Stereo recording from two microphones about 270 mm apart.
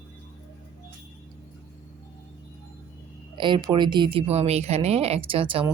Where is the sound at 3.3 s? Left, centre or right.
Centre.